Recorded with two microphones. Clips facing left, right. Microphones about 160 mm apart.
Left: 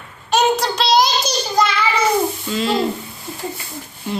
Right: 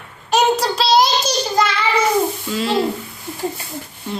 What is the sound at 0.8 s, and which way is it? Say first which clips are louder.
Child singing: right 1 dB; 5° right (ahead or behind).